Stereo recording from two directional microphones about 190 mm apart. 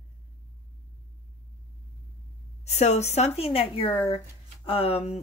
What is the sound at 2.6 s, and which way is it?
A woman's voice, 35° left (ahead or behind).